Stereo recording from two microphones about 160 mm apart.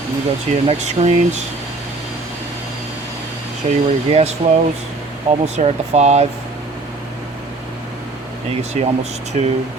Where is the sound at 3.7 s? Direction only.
45° right (ahead or behind).